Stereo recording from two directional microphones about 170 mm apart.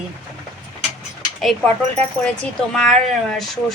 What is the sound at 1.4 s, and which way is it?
A woman's voice, 5° left (ahead or behind).